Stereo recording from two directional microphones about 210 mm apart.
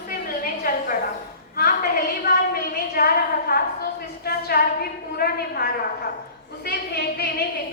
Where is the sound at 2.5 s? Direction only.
45° left (ahead or behind).